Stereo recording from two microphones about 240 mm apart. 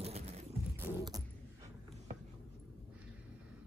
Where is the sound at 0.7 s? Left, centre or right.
Centre.